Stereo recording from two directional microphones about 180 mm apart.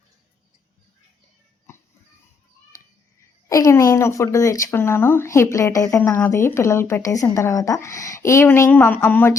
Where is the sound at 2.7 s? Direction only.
20° left (ahead or behind).